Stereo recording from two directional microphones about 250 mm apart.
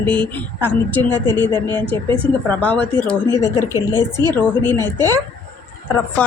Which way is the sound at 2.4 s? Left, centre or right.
Centre.